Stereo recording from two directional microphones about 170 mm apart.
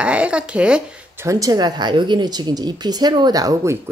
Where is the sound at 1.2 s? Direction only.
20° right (ahead or behind).